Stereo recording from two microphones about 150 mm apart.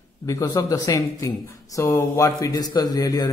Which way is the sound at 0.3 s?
20° left (ahead or behind).